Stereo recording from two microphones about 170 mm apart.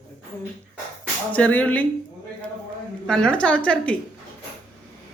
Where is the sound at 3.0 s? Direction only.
5° left (ahead or behind).